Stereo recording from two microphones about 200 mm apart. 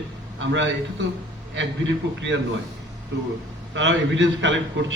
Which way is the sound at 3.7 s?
65° right (ahead or behind).